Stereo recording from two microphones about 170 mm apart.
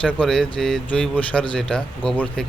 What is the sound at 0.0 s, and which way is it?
Speech, 5° left (ahead or behind).